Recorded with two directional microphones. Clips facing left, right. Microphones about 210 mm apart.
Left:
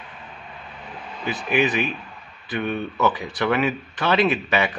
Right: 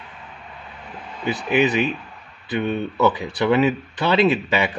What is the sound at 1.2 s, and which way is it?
Speech, 20° right (ahead or behind).